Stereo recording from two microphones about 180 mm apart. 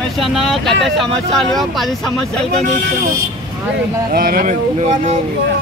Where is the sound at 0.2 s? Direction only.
Centre (ahead or behind).